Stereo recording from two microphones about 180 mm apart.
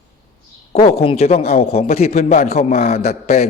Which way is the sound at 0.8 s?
35° left (ahead or behind).